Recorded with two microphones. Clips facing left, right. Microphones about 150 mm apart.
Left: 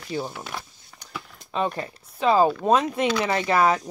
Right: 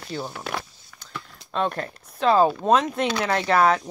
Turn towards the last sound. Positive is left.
turn(degrees=5)  # may be behind; listen again after turning